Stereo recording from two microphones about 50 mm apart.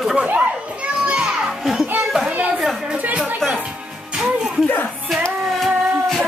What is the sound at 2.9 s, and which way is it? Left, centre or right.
Chatter, right.